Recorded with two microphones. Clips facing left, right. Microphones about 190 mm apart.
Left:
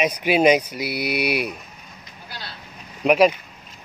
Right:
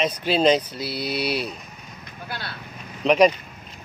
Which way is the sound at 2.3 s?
55° right (ahead or behind).